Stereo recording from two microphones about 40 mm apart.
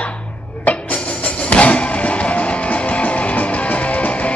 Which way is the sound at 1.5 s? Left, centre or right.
Left.